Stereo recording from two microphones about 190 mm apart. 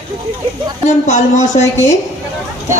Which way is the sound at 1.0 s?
40° left (ahead or behind).